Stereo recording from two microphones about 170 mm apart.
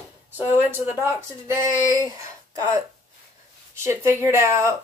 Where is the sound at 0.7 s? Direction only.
10° right (ahead or behind).